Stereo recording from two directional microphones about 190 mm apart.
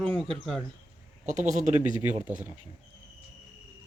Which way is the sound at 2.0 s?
10° right (ahead or behind).